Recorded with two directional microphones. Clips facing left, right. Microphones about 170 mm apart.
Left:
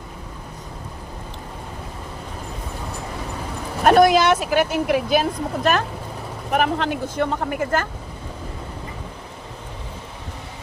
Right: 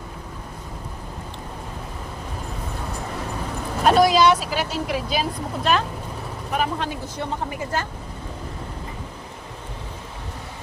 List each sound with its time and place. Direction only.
3.8 s speech: 55° left (ahead or behind)
6.5 s speech: 65° left (ahead or behind)